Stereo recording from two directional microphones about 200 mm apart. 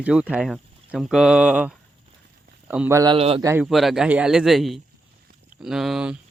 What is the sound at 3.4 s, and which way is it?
Speech, 15° right (ahead or behind).